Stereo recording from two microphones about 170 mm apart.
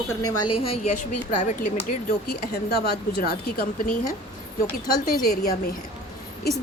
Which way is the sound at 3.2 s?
60° left (ahead or behind).